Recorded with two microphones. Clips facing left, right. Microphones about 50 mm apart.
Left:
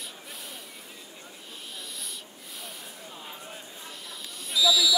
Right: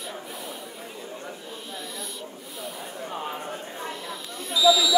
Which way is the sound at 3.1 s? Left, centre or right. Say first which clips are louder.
Right 11 dB; right.